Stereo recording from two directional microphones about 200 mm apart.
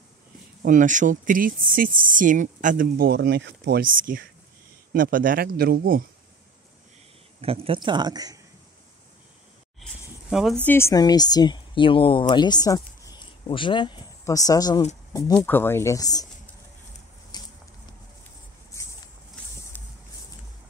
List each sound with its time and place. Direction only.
0.6 s speech: 40° right (ahead or behind)
7.4 s speech: 30° right (ahead or behind)
10.3 s speech: centre (ahead or behind); by 16.3 s 20° left (ahead or behind)
17.3 s a sound: 20° left (ahead or behind)